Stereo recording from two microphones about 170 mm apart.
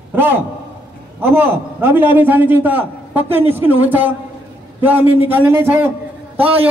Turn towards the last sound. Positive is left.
turn(degrees=-35)  # may be behind; listen again after turning